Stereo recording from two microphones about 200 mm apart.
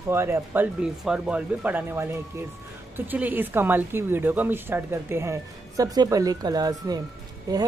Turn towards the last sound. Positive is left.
turn(degrees=-15)  # may be behind; listen again after turning